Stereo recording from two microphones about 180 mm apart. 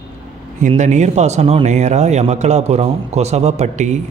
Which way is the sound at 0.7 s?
40° right (ahead or behind).